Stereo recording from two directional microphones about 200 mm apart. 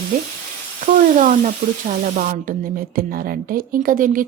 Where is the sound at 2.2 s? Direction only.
40° right (ahead or behind).